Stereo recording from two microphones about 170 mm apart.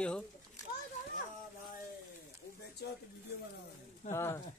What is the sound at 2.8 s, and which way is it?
Speech, 80° left.